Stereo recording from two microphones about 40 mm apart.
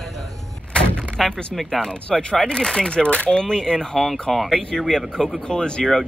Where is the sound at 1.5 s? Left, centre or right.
Centre.